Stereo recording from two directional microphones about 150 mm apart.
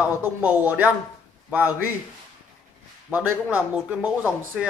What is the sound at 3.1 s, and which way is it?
A man's voice, 10° right (ahead or behind).